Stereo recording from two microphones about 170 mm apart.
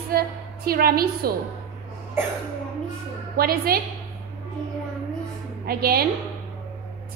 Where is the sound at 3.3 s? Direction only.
60° right (ahead or behind).